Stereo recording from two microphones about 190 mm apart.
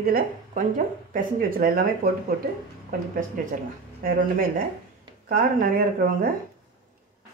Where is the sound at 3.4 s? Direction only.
45° right (ahead or behind).